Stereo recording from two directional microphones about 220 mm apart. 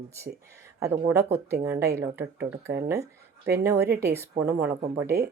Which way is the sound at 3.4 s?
50° right (ahead or behind).